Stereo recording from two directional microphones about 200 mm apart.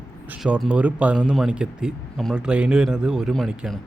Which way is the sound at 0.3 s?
5° right (ahead or behind).